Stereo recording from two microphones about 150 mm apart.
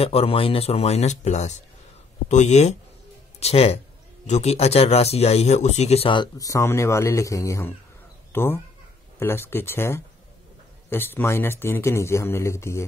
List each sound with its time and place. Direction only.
0.0 s speech: 40° left (ahead or behind)
6.3 s speech: 20° left (ahead or behind)